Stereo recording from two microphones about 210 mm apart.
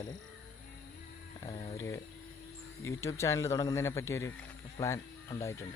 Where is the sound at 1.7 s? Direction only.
15° left (ahead or behind).